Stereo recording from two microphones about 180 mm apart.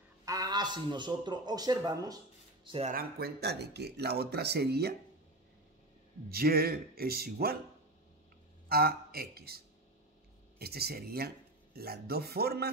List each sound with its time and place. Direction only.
0.2 s a man's voice: 20° right (ahead or behind)
2.9 s speech: 55° right (ahead or behind)
6.2 s speech: 60° right (ahead or behind)
8.6 s a man's voice: 60° right (ahead or behind)
10.6 s speech: 60° right (ahead or behind)